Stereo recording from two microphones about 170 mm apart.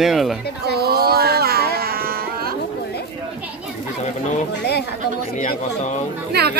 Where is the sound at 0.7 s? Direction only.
65° right (ahead or behind).